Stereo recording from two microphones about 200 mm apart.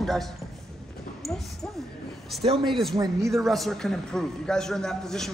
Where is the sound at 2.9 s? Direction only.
20° right (ahead or behind).